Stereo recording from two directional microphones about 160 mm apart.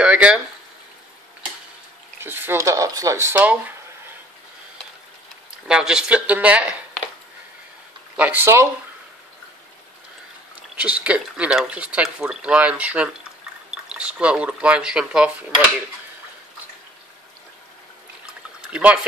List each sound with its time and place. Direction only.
0.0 s speech: 5° right (ahead or behind)
2.1 s speech: 15° right (ahead or behind)
5.7 s speech: 5° right (ahead or behind)
8.2 s speech: 10° right (ahead or behind)
10.8 s speech: 10° right (ahead or behind)
18.7 s speech: 10° right (ahead or behind)